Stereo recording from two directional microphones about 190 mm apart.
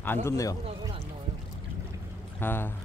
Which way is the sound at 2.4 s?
10° left (ahead or behind).